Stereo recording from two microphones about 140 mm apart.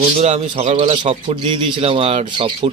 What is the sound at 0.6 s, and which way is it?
Speech, 50° right (ahead or behind).